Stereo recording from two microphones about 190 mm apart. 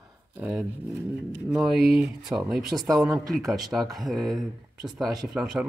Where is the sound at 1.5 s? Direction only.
Centre (ahead or behind).